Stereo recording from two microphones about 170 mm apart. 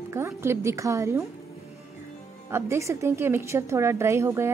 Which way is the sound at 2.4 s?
15° right (ahead or behind).